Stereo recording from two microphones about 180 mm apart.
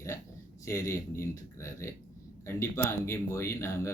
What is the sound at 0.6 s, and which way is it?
Speech, 15° left (ahead or behind).